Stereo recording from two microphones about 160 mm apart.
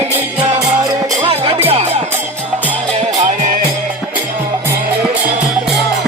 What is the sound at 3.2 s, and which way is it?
Music, 55° right (ahead or behind).